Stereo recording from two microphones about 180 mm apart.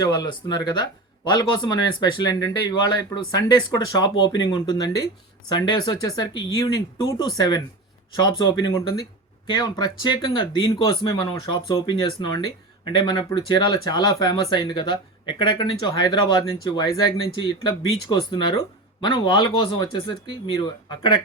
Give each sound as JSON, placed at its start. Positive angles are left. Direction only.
{"t": 0.0, "sound": "speech", "side_deg": 20}